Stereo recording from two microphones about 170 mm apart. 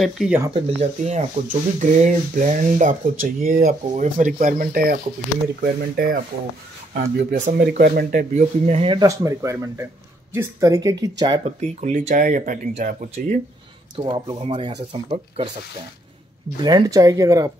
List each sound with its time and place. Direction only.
0.0 s speech: centre (ahead or behind)
0.5 s speech: 35° right (ahead or behind)
8.7 s speech: 30° right (ahead or behind)
9.0 s speech: 20° right (ahead or behind)
11.4 s speech: 45° right (ahead or behind)
13.9 s speech: 30° right (ahead or behind)
16.6 s speech: 25° right (ahead or behind)